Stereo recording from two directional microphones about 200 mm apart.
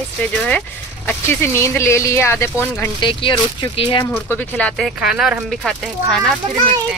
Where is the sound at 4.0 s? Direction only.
10° left (ahead or behind).